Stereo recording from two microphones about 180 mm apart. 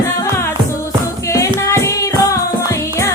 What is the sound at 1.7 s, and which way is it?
Music, 15° left (ahead or behind).